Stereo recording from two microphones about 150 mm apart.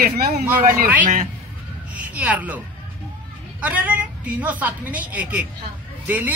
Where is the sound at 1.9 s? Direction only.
10° right (ahead or behind).